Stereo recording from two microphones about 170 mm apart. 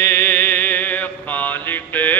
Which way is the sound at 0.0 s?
15° left (ahead or behind).